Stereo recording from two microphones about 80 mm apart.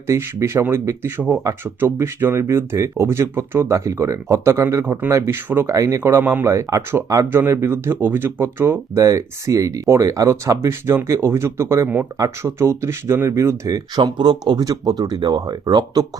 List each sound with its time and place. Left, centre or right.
0.1 s speech: right
5.7 s speech: right
6.1 s speech: right
6.5 s speech: right
9.0 s speech: right
13.3 s speech: right
13.9 s speech: right